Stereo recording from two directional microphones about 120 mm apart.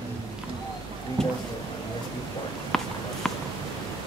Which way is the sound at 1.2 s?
5° left (ahead or behind).